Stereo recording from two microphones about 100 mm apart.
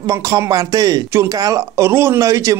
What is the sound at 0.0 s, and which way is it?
A man's voice, 30° right (ahead or behind).